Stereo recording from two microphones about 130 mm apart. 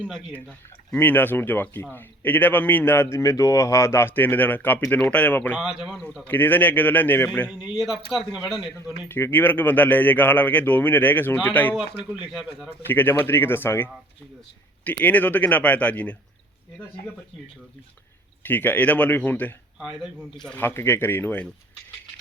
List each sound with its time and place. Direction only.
0.0 s a man's voice: 5° left (ahead or behind)
5.5 s a man's voice: centre (ahead or behind); by 7.3 s 15° left (ahead or behind)
7.8 s speech: centre (ahead or behind)
9.0 s a man's voice: 15° left (ahead or behind)
12.3 s speech: centre (ahead or behind)
12.9 s a man's voice: 15° left (ahead or behind)
18.4 s a man's voice: 15° left (ahead or behind)
19.8 s speech: centre (ahead or behind)
20.6 s a man's voice: 15° left (ahead or behind)